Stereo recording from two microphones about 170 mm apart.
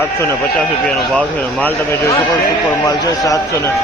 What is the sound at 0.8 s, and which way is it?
A man's voice, 5° left (ahead or behind).